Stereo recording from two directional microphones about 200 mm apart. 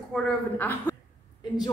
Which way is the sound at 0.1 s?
5° left (ahead or behind).